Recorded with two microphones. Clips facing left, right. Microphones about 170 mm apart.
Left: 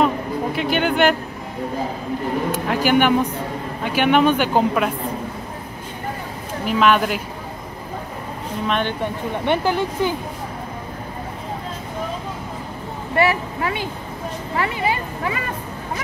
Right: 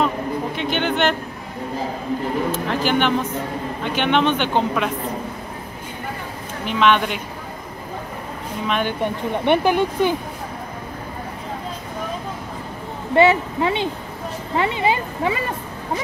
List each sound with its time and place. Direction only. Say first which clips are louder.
0.6 s speech: left 4 dB; 5° left (ahead or behind)
2.5 s speech: left 2 dB; 10° left (ahead or behind)
6.6 s speech: left 1 dB; 5° left (ahead or behind)
8.6 s speech: even; 5° right (ahead or behind)
9.0 s speech: right 2 dB; 20° right (ahead or behind)
13.1 s speech: right 4 dB; 20° right (ahead or behind)